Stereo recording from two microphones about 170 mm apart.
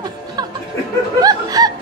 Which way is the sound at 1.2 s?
20° right (ahead or behind).